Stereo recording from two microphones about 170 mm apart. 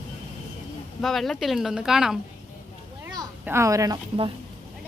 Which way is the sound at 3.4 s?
15° right (ahead or behind).